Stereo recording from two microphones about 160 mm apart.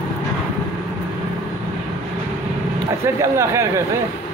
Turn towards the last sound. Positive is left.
turn(degrees=-15)  # may be behind; listen again after turning